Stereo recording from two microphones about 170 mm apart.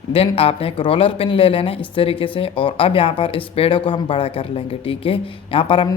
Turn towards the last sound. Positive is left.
turn(degrees=30)  # may be behind; listen again after turning